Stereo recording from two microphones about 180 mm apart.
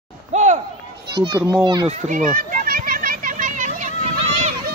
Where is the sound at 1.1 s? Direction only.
25° right (ahead or behind).